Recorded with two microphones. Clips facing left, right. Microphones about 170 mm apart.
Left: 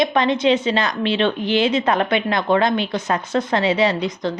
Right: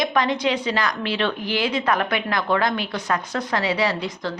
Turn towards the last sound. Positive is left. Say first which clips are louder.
# left 5 dB
turn(degrees=20)  # may be behind; listen again after turning